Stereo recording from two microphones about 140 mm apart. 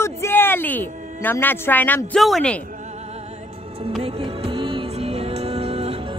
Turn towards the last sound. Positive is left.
turn(degrees=-45)  # may be behind; listen again after turning